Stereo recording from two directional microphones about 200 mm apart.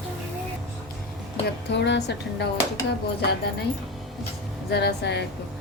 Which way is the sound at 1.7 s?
60° left (ahead or behind).